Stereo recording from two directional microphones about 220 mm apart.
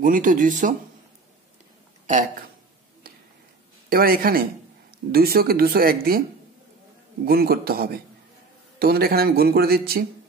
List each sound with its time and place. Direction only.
0.0 s speech: 35° right (ahead or behind)
3.9 s a man's voice: 40° right (ahead or behind)
7.2 s a man's voice: 45° right (ahead or behind)